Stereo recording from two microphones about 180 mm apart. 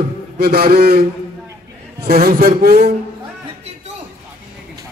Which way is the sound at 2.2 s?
55° right (ahead or behind).